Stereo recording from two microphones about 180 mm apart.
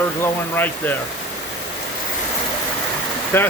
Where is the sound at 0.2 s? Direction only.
10° left (ahead or behind).